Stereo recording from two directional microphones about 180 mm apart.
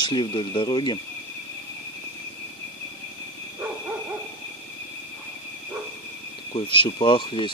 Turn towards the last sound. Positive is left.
turn(degrees=25)  # may be behind; listen again after turning